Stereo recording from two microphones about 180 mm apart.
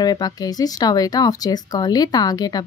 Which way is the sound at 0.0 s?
20° left (ahead or behind).